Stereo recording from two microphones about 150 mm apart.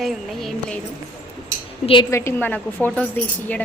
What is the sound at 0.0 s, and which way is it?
Speech, centre (ahead or behind).